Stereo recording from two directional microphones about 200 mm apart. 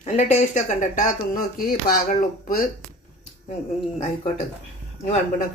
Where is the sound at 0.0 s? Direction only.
35° left (ahead or behind).